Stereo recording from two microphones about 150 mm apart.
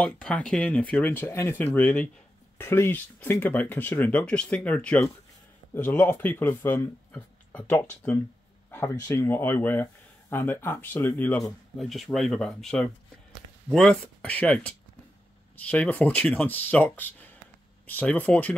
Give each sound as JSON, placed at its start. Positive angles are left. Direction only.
{"t": 0.0, "sound": "speech", "side_deg": 5}
{"t": 11.7, "sound": "speech", "side_deg": 0}